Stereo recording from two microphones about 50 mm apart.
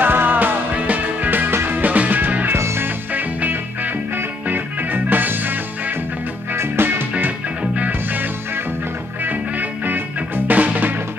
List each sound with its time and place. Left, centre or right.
0.0 s music: right
2.5 s music: right
3.1 s music: right
6.5 s music: right